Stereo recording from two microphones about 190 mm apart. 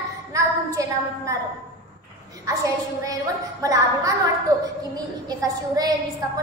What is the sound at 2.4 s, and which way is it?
A child's voice, 20° right (ahead or behind).